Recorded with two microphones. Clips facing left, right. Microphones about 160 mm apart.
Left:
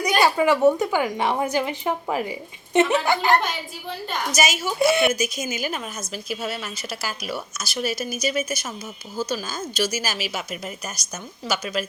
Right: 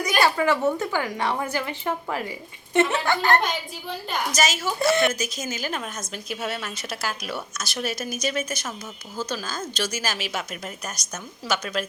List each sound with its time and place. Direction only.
0.2 s a woman's voice: 15° left (ahead or behind)